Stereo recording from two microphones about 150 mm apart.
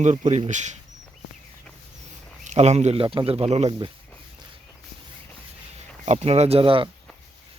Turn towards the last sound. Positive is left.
turn(degrees=-35)  # may be behind; listen again after turning